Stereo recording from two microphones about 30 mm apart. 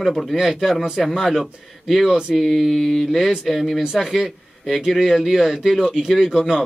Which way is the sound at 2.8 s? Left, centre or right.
Centre.